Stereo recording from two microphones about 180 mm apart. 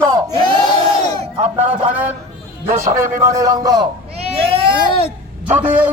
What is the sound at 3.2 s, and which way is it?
Speech, 20° right (ahead or behind).